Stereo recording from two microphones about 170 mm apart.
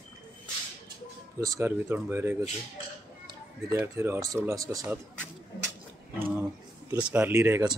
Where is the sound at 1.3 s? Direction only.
20° right (ahead or behind).